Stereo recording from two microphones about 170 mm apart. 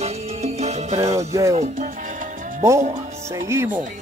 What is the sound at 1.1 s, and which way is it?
Music, 20° right (ahead or behind).